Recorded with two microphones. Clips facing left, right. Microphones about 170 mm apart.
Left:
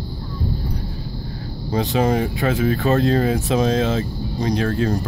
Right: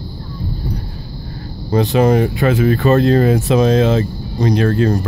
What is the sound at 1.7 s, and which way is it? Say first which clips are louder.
Speech: right 6 dB; 60° right (ahead or behind).